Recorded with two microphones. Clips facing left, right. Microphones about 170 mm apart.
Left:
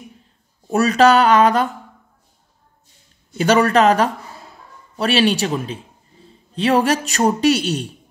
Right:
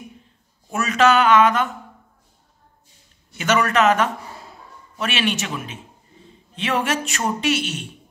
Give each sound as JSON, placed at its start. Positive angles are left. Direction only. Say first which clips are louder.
{"t": 0.7, "sound": "speech", "louder": "left 5 dB", "side_deg": 35}
{"t": 3.3, "sound": "speech", "louder": "left 5 dB", "side_deg": 35}